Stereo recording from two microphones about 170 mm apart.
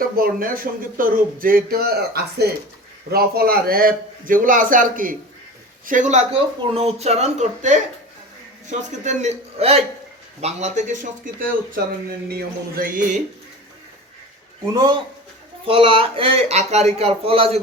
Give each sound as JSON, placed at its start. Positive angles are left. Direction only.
{"t": 0.2, "sound": "a man's voice", "side_deg": -55}
{"t": 14.7, "sound": "speech", "side_deg": -25}